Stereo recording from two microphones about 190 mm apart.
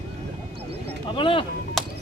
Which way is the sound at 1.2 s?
25° left (ahead or behind).